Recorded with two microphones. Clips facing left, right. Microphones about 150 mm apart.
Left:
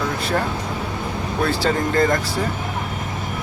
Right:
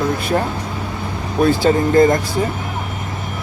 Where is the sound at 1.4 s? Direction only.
20° right (ahead or behind).